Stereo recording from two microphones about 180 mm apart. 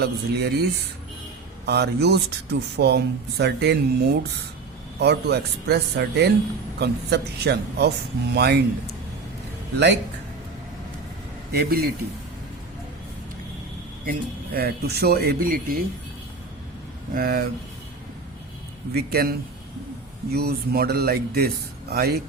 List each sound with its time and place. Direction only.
0.0 s speech: 65° right (ahead or behind)
1.6 s speech: 65° right (ahead or behind)
9.7 s speech: 75° right (ahead or behind)
11.5 s speech: 60° right (ahead or behind)
14.0 s speech: 55° right (ahead or behind)
17.2 s speech: 55° right (ahead or behind)
18.9 s speech: 60° right (ahead or behind)